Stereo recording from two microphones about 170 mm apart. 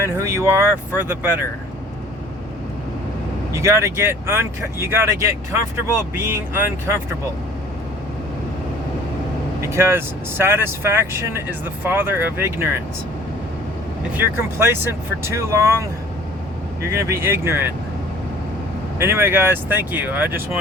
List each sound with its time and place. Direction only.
0.0 s speech: 15° right (ahead or behind)
3.5 s speech: 15° right (ahead or behind)
9.6 s speech: 15° right (ahead or behind)
14.2 s speech: 15° right (ahead or behind)
16.9 s speech: 15° right (ahead or behind)
18.9 s speech: 15° right (ahead or behind)